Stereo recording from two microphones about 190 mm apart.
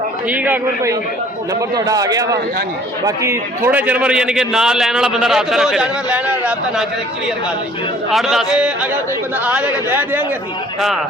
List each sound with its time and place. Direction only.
0.3 s a man's voice: 10° right (ahead or behind)
8.1 s a man's voice: centre (ahead or behind)